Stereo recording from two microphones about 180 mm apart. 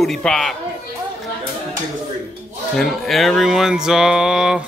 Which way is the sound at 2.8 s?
Centre (ahead or behind).